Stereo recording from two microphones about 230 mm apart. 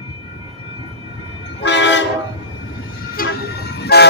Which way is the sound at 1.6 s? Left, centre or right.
Left.